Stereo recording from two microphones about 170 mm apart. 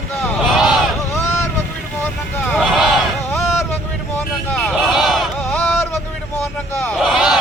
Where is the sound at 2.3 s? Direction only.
10° left (ahead or behind).